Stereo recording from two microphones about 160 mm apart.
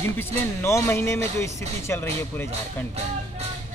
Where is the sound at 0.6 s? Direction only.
15° left (ahead or behind).